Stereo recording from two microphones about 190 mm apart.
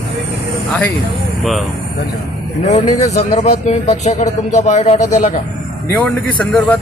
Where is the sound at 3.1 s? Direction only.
35° left (ahead or behind).